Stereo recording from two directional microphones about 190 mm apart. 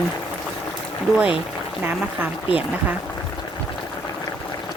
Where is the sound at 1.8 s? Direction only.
10° right (ahead or behind).